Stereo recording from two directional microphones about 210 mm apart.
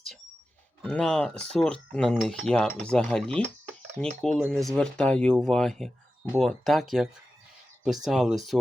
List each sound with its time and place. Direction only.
0.8 s cutlery: 5° left (ahead or behind)